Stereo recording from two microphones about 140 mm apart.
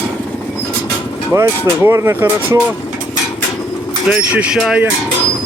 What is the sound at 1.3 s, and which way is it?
Speech, 20° right (ahead or behind).